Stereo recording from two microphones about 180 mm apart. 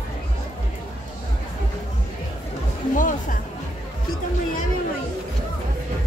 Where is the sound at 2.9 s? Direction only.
45° left (ahead or behind).